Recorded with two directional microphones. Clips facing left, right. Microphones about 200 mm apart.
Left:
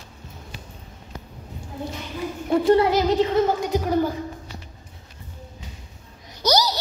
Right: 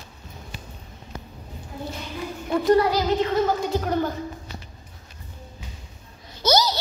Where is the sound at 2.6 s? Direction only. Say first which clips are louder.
Left 1 dB; 25° left (ahead or behind).